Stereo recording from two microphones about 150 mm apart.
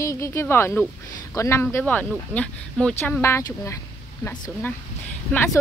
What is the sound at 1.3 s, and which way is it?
A woman's voice, 15° left (ahead or behind).